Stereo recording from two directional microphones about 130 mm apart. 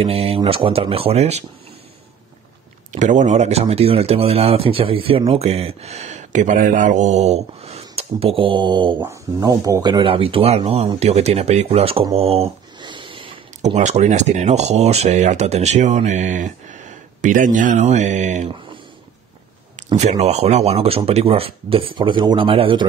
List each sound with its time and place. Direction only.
0.0 s speech: 50° right (ahead or behind)
2.9 s speech: 70° right (ahead or behind); by 9.0 s 35° right (ahead or behind)
9.0 s speech: 25° right (ahead or behind); by 12.0 s 50° right (ahead or behind)
12.2 s a sound: 50° right (ahead or behind)
13.7 s speech: 65° right (ahead or behind)
20.0 s speech: 60° right (ahead or behind)